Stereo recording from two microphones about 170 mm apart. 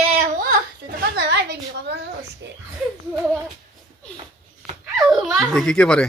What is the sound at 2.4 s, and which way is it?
Speech, 90° right.